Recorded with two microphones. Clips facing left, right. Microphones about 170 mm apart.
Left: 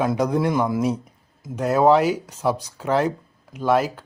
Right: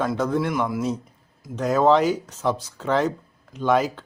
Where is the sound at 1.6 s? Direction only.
10° left (ahead or behind).